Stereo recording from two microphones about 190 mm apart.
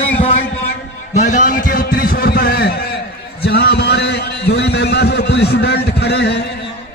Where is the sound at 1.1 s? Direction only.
40° left (ahead or behind).